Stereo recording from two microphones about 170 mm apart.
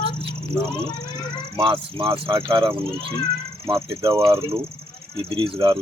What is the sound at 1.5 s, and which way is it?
Speech, 30° right (ahead or behind).